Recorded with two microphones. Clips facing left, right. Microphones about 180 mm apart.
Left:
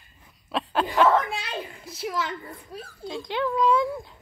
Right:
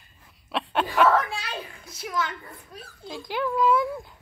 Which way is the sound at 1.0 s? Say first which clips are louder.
Even; 25° left (ahead or behind).